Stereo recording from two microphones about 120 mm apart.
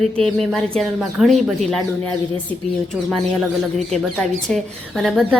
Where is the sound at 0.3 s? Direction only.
Centre (ahead or behind).